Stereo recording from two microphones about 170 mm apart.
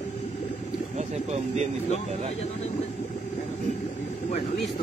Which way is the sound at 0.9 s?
40° right (ahead or behind).